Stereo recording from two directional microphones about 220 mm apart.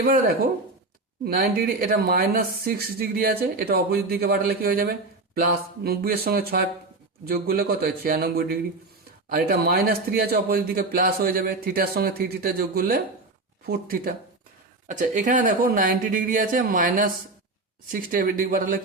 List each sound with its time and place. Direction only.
0.0 s speech: 40° right (ahead or behind)